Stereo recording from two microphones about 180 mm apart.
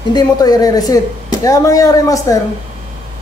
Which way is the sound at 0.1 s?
20° left (ahead or behind).